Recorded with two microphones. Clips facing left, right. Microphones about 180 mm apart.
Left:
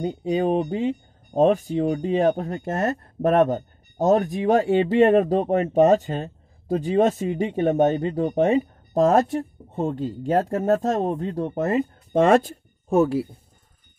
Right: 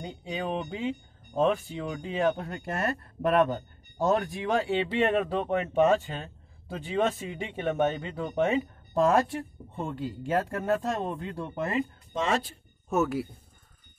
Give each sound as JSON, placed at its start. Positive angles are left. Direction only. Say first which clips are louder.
{"t": 0.0, "sound": "speech", "louder": "left 11 dB", "side_deg": 40}
{"t": 12.9, "sound": "speech", "louder": "left 7 dB", "side_deg": 30}